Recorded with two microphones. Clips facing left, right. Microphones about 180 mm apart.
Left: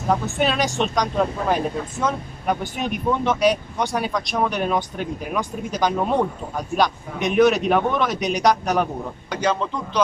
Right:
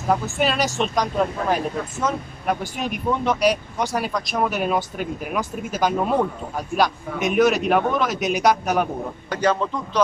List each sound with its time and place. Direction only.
0.1 s speech: 5° right (ahead or behind)